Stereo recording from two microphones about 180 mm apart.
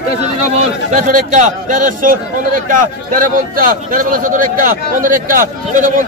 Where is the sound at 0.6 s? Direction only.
45° right (ahead or behind).